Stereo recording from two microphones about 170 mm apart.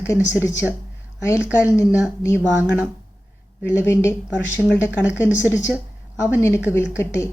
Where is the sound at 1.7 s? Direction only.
15° left (ahead or behind).